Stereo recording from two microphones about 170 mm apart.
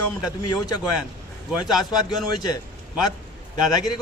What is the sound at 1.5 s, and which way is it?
Speech, centre (ahead or behind).